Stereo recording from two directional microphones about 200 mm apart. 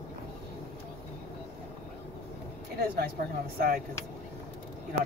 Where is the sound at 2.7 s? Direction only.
50° right (ahead or behind).